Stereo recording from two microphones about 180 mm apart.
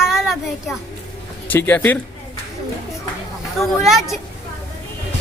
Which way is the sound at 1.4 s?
10° left (ahead or behind).